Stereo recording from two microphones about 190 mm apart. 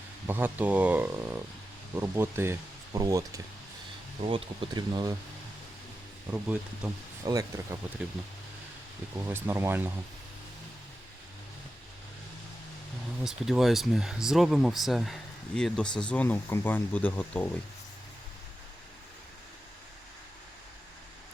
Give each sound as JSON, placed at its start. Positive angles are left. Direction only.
{"t": 0.3, "sound": "speech", "side_deg": -10}
{"t": 4.3, "sound": "speech", "side_deg": -30}
{"t": 6.3, "sound": "speech", "side_deg": -10}
{"t": 9.2, "sound": "speech", "side_deg": -15}
{"t": 13.2, "sound": "speech", "side_deg": 0}